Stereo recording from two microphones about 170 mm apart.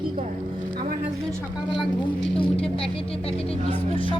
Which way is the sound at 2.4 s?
35° left (ahead or behind).